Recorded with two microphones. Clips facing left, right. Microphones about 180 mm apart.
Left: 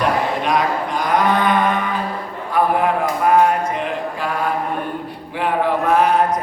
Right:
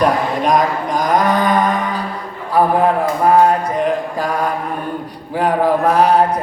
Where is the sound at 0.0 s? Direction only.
40° right (ahead or behind).